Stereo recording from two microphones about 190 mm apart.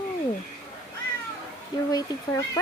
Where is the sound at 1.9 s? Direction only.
20° left (ahead or behind).